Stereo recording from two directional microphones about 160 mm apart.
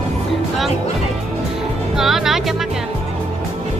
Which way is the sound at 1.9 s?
Centre (ahead or behind).